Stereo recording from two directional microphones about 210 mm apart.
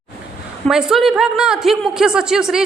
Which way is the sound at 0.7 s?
Centre (ahead or behind).